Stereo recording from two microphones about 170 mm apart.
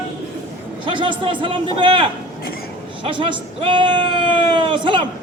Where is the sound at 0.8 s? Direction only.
30° right (ahead or behind).